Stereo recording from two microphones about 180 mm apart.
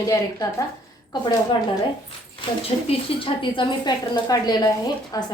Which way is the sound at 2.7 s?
30° left (ahead or behind).